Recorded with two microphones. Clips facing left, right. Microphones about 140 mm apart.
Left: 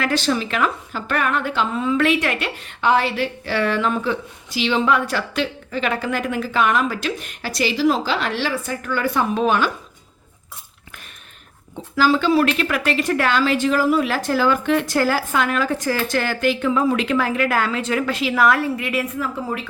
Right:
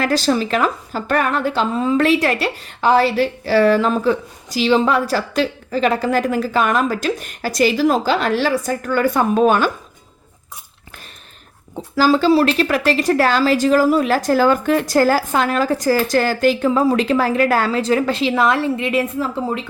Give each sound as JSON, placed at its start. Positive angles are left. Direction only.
{"t": 0.0, "sound": "a woman's voice", "side_deg": -40}
{"t": 11.8, "sound": "a woman's voice", "side_deg": -40}